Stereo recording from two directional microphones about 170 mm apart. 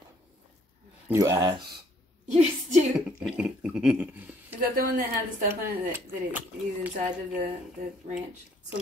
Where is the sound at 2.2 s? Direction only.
45° right (ahead or behind).